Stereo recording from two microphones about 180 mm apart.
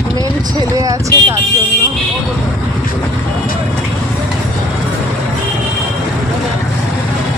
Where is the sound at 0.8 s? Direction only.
20° right (ahead or behind).